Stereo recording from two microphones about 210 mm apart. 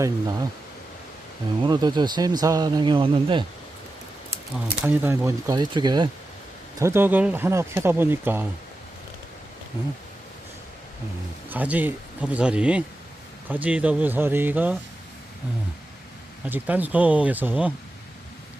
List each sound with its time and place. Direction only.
0.0 s speech: 15° right (ahead or behind)
1.6 s speech: 20° right (ahead or behind)
4.9 s speech: 10° right (ahead or behind)
11.4 s speech: 10° right (ahead or behind)
16.5 s speech: 10° right (ahead or behind)